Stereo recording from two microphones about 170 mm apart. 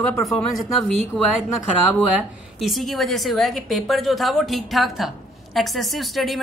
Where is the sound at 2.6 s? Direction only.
Centre (ahead or behind).